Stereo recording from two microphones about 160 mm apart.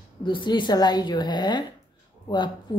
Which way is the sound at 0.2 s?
30° left (ahead or behind).